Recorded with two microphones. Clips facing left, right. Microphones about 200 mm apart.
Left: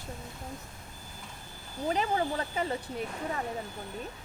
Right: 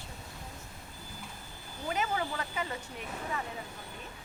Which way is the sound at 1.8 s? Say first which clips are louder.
Left 4 dB; 35° left (ahead or behind).